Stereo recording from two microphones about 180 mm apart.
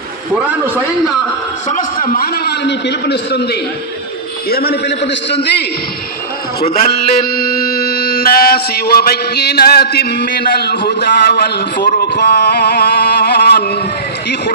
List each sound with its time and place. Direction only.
1.7 s mantra: 50° left (ahead or behind); by 3.5 s 65° left (ahead or behind)
4.5 s a man's voice: 60° left (ahead or behind)
6.8 s mantra: 55° left (ahead or behind)